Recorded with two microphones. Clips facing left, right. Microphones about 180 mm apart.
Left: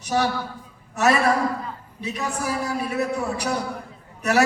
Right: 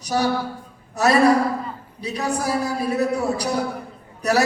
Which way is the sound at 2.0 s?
35° right (ahead or behind).